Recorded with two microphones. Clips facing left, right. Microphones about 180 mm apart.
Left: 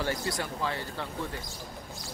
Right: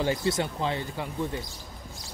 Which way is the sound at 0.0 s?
20° right (ahead or behind).